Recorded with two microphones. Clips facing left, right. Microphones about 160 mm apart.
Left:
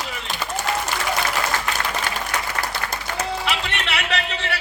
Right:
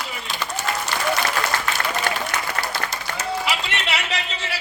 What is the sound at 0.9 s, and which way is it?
Applause, 10° left (ahead or behind).